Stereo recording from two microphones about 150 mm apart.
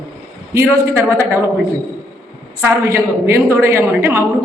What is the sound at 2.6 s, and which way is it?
A man's voice, 15° right (ahead or behind).